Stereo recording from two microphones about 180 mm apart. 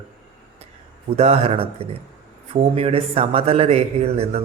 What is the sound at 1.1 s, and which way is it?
A man's voice, 35° right (ahead or behind).